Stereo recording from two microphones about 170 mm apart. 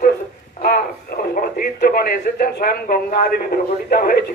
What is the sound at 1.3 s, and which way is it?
A man's voice, 60° left (ahead or behind).